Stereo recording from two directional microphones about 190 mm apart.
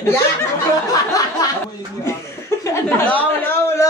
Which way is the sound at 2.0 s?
15° left (ahead or behind).